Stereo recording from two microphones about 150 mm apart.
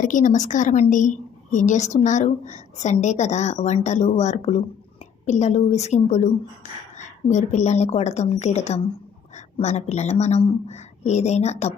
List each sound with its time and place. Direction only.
0.0 s a woman's voice: 60° left (ahead or behind)